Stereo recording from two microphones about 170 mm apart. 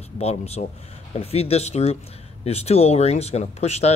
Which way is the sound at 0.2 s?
40° left (ahead or behind).